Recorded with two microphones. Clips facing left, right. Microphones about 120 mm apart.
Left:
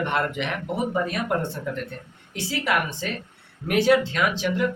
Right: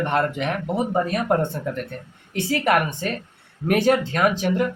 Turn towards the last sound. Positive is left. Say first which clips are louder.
# right 4 dB
turn(degrees=-45)  # may be behind; listen again after turning